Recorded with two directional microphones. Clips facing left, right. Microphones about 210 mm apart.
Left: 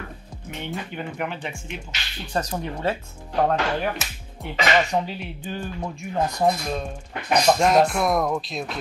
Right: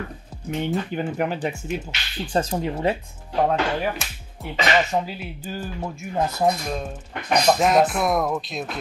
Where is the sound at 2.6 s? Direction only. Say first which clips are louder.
Right 3 dB; 15° right (ahead or behind).